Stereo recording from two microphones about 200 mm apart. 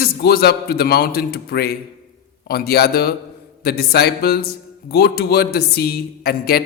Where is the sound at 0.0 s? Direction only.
50° left (ahead or behind).